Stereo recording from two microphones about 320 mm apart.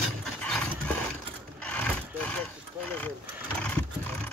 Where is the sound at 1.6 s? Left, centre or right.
Centre.